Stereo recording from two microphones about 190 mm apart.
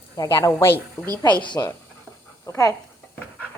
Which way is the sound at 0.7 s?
15° right (ahead or behind).